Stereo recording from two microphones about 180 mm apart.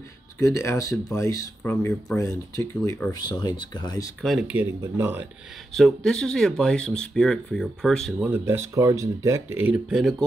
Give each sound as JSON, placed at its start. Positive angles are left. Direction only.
{"t": 0.4, "sound": "speech", "side_deg": 15}
{"t": 4.2, "sound": "speech", "side_deg": 0}
{"t": 5.7, "sound": "speech", "side_deg": 5}
{"t": 8.2, "sound": "speech", "side_deg": -10}